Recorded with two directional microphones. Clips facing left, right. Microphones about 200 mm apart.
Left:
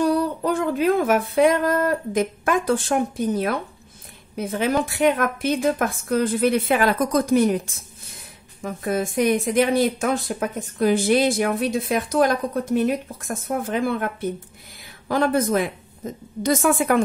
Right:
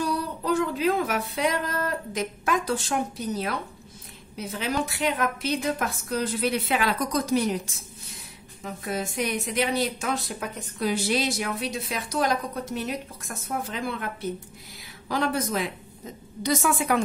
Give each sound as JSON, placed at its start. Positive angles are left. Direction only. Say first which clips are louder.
{"t": 0.0, "sound": "a woman's voice", "louder": "left 8 dB", "side_deg": 55}
{"t": 8.6, "sound": "a woman's voice", "louder": "left 7 dB", "side_deg": 50}